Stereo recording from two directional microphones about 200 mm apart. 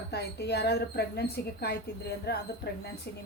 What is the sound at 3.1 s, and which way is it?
Speech, 55° left (ahead or behind).